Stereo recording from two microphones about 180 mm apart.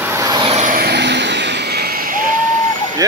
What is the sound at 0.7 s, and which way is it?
Vehicle, 65° right (ahead or behind).